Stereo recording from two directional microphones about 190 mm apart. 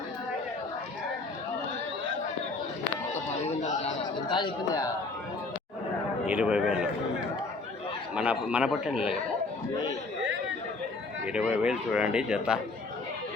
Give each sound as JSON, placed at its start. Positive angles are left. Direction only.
{"t": 3.4, "sound": "chatter", "side_deg": 35}
{"t": 4.3, "sound": "speech", "side_deg": 25}
{"t": 6.2, "sound": "speech", "side_deg": -5}
{"t": 8.1, "sound": "speech", "side_deg": -5}
{"t": 11.3, "sound": "speech", "side_deg": -5}